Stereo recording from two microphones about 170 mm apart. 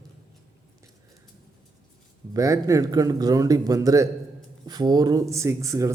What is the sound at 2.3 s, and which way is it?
Speech, 20° right (ahead or behind).